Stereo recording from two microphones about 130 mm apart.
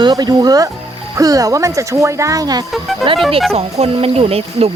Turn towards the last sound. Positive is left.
turn(degrees=-50)  # may be behind; listen again after turning